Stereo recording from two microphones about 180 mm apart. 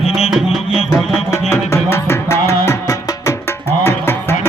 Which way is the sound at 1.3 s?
15° left (ahead or behind).